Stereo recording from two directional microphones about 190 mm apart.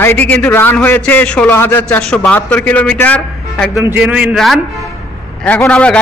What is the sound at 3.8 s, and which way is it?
A man's voice, 5° right (ahead or behind).